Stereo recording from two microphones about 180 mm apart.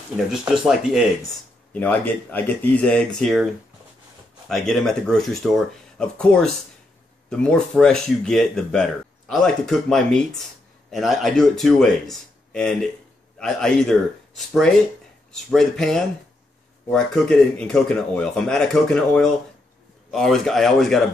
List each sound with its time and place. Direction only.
0.3 s speech: 5° right (ahead or behind)
1.7 s speech: 10° left (ahead or behind)
4.5 s speech: 5° left (ahead or behind)